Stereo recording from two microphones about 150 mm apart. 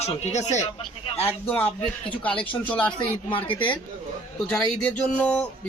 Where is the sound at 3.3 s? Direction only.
35° left (ahead or behind).